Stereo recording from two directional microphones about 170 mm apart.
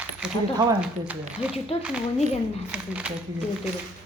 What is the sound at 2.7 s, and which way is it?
Speech, 5° right (ahead or behind).